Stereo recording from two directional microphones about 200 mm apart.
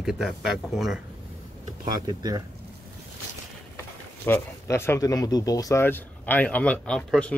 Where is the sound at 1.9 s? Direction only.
20° right (ahead or behind).